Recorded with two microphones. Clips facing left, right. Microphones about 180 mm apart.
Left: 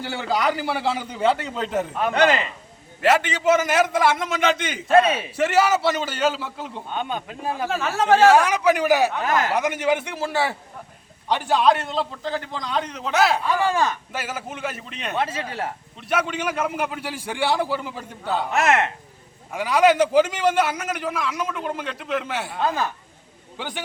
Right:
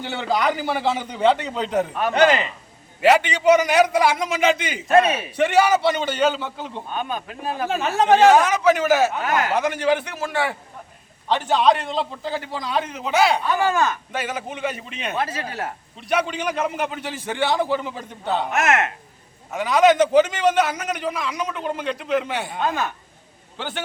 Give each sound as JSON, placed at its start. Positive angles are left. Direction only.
{"t": 0.3, "sound": "a man's voice", "side_deg": 5}
{"t": 2.1, "sound": "speech", "side_deg": -20}
{"t": 3.0, "sound": "a man's voice", "side_deg": 0}
{"t": 4.9, "sound": "a man's voice", "side_deg": 30}
{"t": 5.4, "sound": "a man's voice", "side_deg": 5}
{"t": 6.9, "sound": "a man's voice", "side_deg": 25}
{"t": 7.7, "sound": "speech", "side_deg": -20}
{"t": 8.4, "sound": "a man's voice", "side_deg": 10}
{"t": 11.3, "sound": "a man's voice", "side_deg": 10}
{"t": 15.2, "sound": "a man's voice", "side_deg": 25}
{"t": 16.0, "sound": "a man's voice", "side_deg": 0}
{"t": 18.5, "sound": "speech", "side_deg": 30}
{"t": 19.5, "sound": "a man's voice", "side_deg": 10}
{"t": 23.6, "sound": "a man's voice", "side_deg": 10}